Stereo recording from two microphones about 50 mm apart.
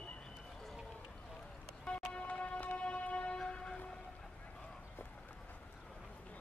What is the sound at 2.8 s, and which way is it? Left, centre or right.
Train, left.